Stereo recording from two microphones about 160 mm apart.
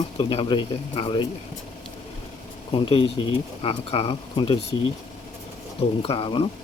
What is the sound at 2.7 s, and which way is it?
Speech, 35° left (ahead or behind).